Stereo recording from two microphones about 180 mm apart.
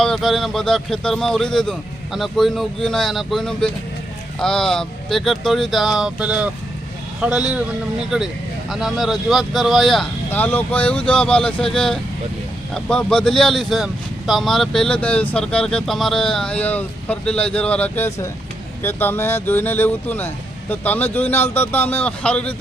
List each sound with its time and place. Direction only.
0.0 s speech: centre (ahead or behind)